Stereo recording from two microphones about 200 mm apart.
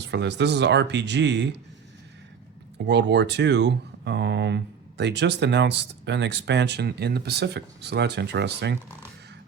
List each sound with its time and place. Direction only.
0.0 s speech: 60° right (ahead or behind)
2.7 s speech: 60° right (ahead or behind)